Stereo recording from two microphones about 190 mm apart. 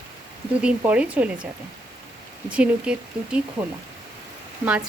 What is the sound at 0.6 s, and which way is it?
Speech, 5° right (ahead or behind).